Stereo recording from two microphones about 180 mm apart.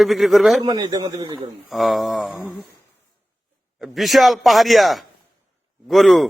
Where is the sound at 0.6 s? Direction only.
25° right (ahead or behind).